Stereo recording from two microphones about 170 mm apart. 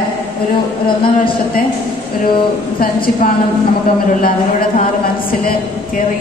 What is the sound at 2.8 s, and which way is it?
Speech, 60° left (ahead or behind).